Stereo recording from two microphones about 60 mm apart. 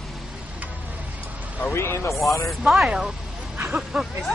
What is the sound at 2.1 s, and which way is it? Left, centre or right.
Speech, centre.